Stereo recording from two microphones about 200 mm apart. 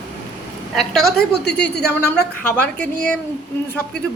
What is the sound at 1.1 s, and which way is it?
Speech, 50° left (ahead or behind).